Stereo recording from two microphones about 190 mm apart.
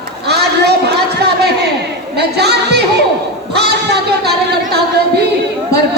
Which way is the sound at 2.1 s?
60° right (ahead or behind).